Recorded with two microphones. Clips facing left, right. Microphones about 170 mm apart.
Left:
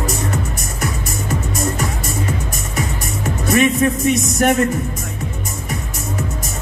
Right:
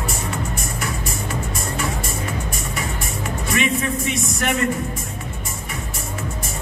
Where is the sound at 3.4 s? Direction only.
45° left (ahead or behind).